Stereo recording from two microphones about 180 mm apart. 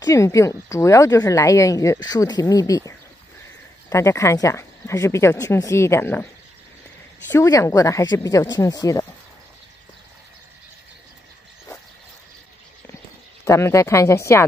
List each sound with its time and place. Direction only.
0.0 s a woman's voice: 15° left (ahead or behind)
3.9 s a woman's voice: 15° left (ahead or behind)
7.2 s speech: 15° left (ahead or behind)
13.5 s a woman's voice: 15° left (ahead or behind)